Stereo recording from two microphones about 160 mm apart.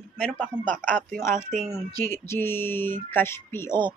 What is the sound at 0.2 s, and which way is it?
Speech, 10° left (ahead or behind).